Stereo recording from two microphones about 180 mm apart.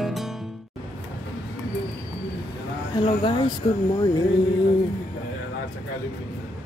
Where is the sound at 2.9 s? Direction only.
25° left (ahead or behind).